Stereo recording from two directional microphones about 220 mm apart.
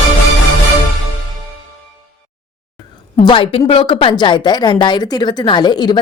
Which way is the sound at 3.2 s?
25° left (ahead or behind).